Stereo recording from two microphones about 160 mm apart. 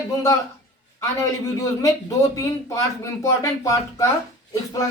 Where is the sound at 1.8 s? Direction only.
20° left (ahead or behind).